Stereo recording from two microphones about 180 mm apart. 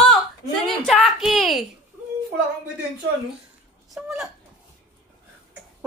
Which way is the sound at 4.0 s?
10° right (ahead or behind).